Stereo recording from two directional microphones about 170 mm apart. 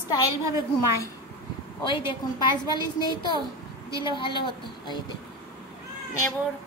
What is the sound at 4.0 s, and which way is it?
A woman's voice, 30° left (ahead or behind).